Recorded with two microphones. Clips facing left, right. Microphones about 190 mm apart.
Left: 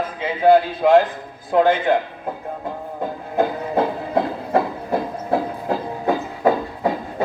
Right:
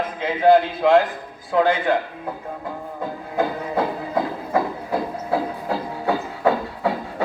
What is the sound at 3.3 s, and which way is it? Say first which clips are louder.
Music: left 3 dB; 20° left (ahead or behind).